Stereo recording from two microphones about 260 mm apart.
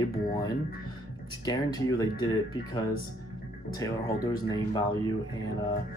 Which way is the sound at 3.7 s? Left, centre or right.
Centre.